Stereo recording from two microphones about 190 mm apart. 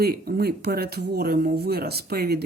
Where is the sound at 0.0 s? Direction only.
55° right (ahead or behind).